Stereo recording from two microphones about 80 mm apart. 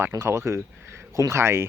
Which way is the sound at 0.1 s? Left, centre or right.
Right.